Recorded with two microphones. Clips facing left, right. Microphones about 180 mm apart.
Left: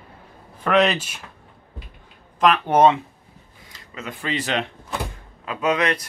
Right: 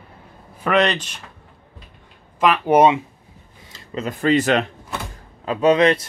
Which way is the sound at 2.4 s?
5° right (ahead or behind).